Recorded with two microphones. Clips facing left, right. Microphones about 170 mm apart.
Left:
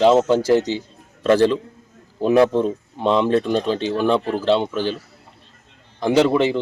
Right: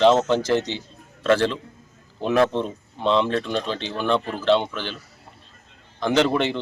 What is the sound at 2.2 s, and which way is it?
Speech, 10° left (ahead or behind).